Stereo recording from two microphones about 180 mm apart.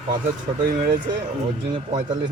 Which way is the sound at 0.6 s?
50° right (ahead or behind).